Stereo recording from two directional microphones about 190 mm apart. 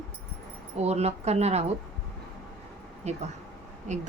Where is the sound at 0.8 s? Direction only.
35° right (ahead or behind).